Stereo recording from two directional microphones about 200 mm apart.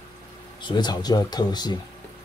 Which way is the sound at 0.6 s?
20° left (ahead or behind).